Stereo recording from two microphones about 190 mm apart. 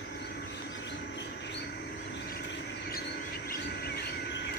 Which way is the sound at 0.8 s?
70° left (ahead or behind).